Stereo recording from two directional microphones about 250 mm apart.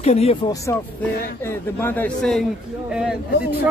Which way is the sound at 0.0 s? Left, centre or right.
Left.